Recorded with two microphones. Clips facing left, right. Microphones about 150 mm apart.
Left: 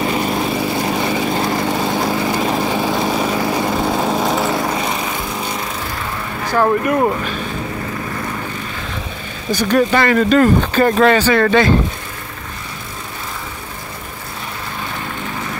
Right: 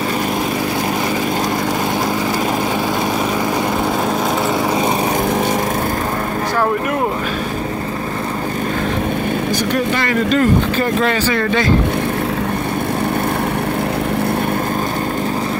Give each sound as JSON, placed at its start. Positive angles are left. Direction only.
{"t": 10.8, "sound": "speech", "side_deg": 75}